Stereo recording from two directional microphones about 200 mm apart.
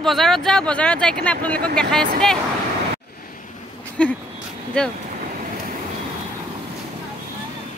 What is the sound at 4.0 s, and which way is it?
Speech, 5° left (ahead or behind).